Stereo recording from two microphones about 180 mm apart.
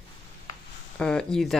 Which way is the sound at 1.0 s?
5° left (ahead or behind).